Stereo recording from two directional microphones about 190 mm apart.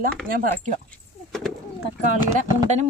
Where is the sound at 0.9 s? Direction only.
5° left (ahead or behind).